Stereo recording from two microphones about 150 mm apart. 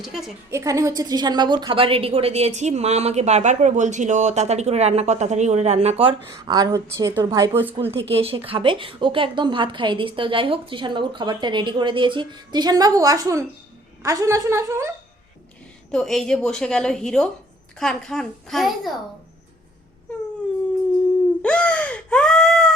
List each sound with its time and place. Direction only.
0.0 s a woman's voice: centre (ahead or behind)
0.5 s a woman's voice: 20° right (ahead or behind); by 6.1 s 40° right (ahead or behind)
6.3 s a woman's voice: 25° right (ahead or behind)
7.8 s a woman's voice: 40° right (ahead or behind); by 14.8 s 20° right (ahead or behind)
15.9 s a woman's voice: 5° left (ahead or behind)
21.4 s a sound: 10° left (ahead or behind)